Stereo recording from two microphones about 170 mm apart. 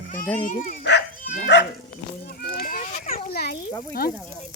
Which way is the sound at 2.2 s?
60° left (ahead or behind).